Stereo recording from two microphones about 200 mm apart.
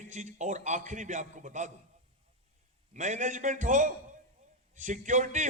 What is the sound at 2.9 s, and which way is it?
A man's voice, 35° right (ahead or behind).